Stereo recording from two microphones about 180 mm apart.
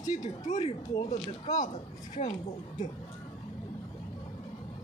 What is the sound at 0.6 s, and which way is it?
Speech, 35° left (ahead or behind).